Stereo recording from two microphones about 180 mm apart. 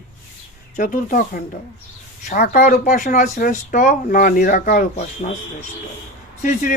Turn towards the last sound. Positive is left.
turn(degrees=45)  # may be behind; listen again after turning